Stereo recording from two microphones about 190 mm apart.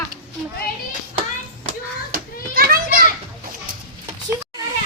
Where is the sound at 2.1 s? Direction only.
50° right (ahead or behind).